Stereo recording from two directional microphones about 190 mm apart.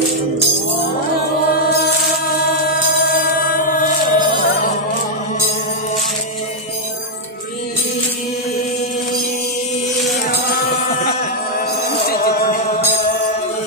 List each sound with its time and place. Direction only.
2.6 s music: 50° left (ahead or behind)
10.4 s music: 50° left (ahead or behind)
12.0 s music: 50° left (ahead or behind)